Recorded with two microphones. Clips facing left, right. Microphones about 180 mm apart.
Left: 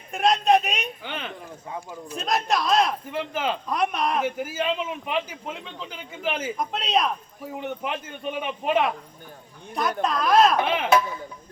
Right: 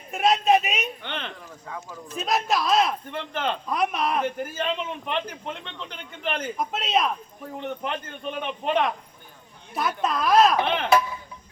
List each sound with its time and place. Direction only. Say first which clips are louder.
0.1 s a sound: even; centre (ahead or behind)
1.6 s speech: left 2 dB; 20° left (ahead or behind)
2.1 s speech: even; centre (ahead or behind)
10.0 s speech: even; centre (ahead or behind)